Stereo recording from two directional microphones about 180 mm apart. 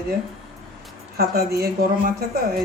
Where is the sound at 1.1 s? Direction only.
60° right (ahead or behind).